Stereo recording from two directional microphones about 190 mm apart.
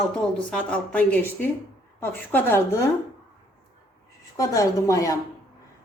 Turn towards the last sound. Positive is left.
turn(degrees=15)  # may be behind; listen again after turning